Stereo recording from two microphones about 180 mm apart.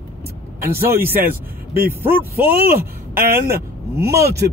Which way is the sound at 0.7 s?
60° right (ahead or behind).